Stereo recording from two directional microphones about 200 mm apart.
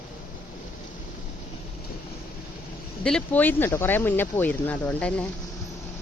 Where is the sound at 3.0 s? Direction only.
5° left (ahead or behind).